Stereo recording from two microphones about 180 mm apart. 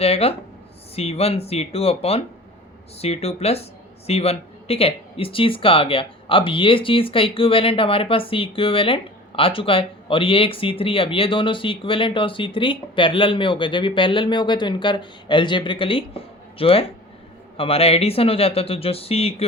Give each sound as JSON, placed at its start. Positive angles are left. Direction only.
{"t": 0.0, "sound": "speech", "side_deg": 35}